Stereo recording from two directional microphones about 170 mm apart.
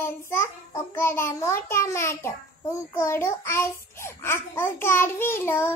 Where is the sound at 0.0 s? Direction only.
15° left (ahead or behind).